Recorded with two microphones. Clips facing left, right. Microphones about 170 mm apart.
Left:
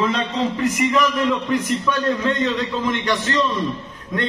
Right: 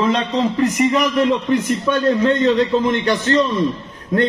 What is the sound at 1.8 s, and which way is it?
A man's voice, 35° right (ahead or behind).